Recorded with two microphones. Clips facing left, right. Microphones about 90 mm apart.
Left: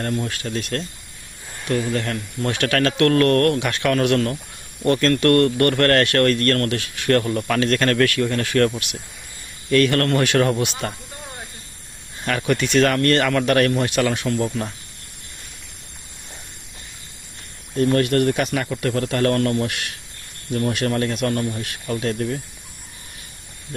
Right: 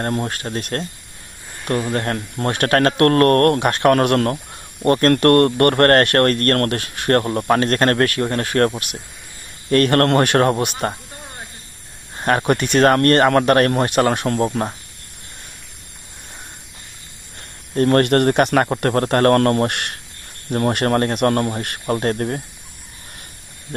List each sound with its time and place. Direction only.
0.0 s speech: 40° right (ahead or behind)
12.1 s speech: 40° right (ahead or behind)
17.7 s speech: 55° right (ahead or behind)